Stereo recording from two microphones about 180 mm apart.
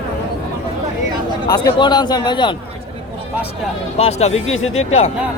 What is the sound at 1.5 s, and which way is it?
A man's voice, 20° left (ahead or behind).